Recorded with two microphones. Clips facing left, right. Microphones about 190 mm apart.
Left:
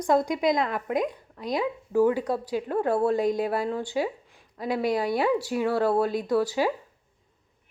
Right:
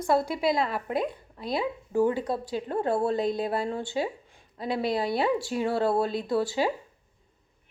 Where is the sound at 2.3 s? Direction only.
10° left (ahead or behind).